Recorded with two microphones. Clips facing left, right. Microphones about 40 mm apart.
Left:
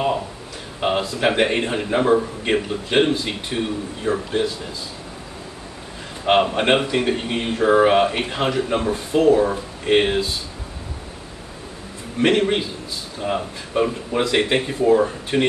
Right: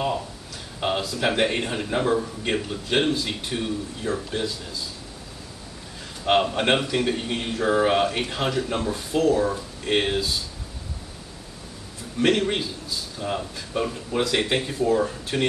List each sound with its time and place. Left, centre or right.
0.7 s speech: centre
6.2 s speech: centre
12.2 s speech: left